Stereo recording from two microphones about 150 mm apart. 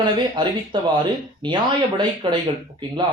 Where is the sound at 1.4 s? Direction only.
30° right (ahead or behind).